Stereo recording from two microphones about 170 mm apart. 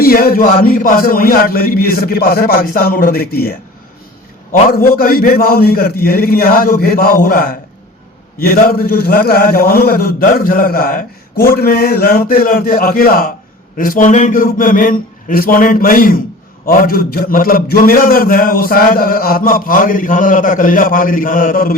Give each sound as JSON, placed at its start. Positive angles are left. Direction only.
{"t": 0.0, "sound": "a man's voice", "side_deg": 60}
{"t": 4.8, "sound": "a man's voice", "side_deg": 60}